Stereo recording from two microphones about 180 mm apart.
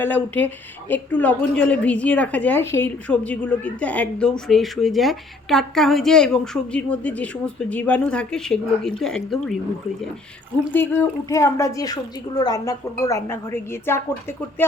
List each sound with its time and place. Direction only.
0.0 s a woman's voice: 10° left (ahead or behind)
10.7 s a woman's voice: 10° left (ahead or behind)